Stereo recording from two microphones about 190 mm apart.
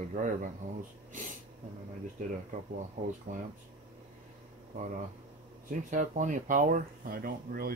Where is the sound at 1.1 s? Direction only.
40° right (ahead or behind).